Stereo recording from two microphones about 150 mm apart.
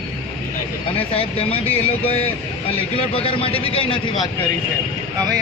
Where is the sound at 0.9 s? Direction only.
40° left (ahead or behind).